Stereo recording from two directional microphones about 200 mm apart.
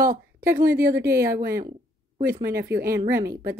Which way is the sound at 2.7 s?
50° right (ahead or behind).